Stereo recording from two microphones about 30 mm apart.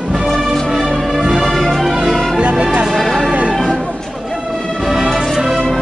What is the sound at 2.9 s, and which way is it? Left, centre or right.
Music, centre.